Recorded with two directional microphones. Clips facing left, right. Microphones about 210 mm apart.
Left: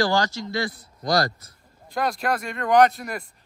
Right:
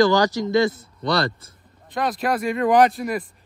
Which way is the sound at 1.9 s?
Centre (ahead or behind).